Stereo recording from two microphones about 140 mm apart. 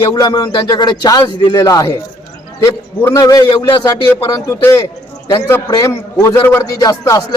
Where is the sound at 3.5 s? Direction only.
35° left (ahead or behind).